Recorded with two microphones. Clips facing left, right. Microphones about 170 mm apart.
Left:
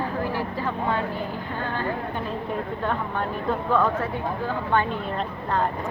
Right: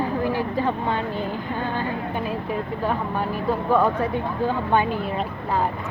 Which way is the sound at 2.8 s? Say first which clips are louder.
Right 2 dB; 5° right (ahead or behind).